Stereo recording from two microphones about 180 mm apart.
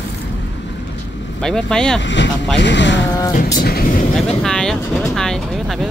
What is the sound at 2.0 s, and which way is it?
Speech, 80° left.